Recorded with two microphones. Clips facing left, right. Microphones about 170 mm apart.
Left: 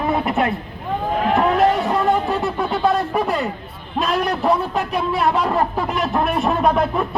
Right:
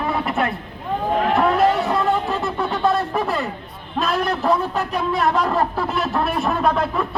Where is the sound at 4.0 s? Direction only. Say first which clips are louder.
Left 1 dB; 10° left (ahead or behind).